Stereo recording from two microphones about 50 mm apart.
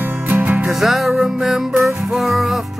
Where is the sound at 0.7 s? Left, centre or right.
Centre.